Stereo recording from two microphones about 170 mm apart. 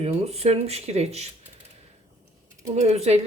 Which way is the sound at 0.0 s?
35° right (ahead or behind).